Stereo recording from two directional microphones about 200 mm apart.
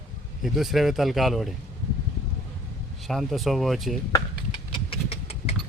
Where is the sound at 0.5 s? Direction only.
Centre (ahead or behind).